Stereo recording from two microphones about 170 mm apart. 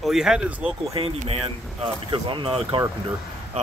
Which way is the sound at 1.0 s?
30° right (ahead or behind).